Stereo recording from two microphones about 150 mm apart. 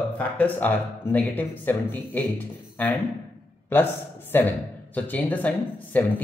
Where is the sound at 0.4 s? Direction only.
10° left (ahead or behind).